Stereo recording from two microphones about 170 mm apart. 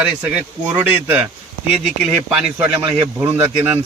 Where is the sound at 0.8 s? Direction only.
10° right (ahead or behind).